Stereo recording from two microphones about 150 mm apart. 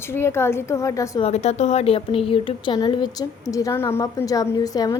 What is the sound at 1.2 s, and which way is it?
A woman's voice, 45° left (ahead or behind).